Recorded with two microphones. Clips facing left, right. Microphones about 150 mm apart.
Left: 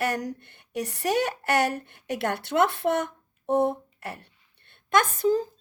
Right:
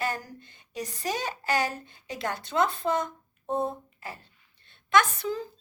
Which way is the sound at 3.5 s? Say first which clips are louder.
Left 6 dB; 75° left (ahead or behind).